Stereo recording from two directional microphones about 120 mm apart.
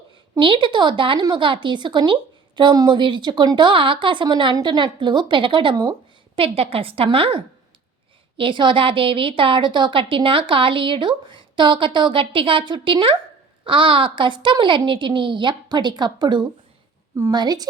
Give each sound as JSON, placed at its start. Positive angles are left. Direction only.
{"t": 0.3, "sound": "a woman's voice", "side_deg": -45}